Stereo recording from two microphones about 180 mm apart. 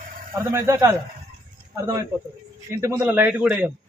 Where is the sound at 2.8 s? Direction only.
10° right (ahead or behind).